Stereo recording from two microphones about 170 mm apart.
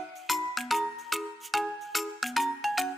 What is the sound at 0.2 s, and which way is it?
Music, centre (ahead or behind).